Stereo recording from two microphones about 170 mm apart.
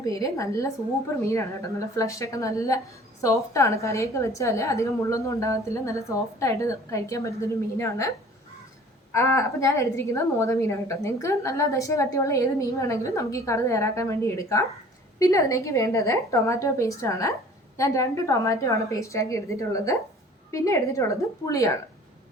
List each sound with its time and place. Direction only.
0.0 s a woman's voice: 20° left (ahead or behind)
2.0 s a woman's voice: 20° left (ahead or behind)
9.1 s a woman's voice: 15° left (ahead or behind)